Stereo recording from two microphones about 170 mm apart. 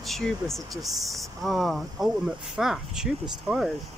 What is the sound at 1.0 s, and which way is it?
Speech, centre (ahead or behind).